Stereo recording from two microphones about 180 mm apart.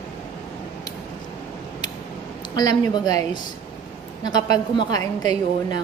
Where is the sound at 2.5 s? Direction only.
20° left (ahead or behind).